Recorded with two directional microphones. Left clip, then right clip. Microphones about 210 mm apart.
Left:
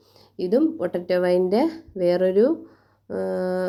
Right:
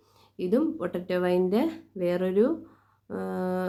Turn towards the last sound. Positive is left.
turn(degrees=15)  # may be behind; listen again after turning